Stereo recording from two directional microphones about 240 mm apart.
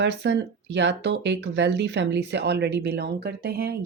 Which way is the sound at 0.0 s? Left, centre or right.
Right.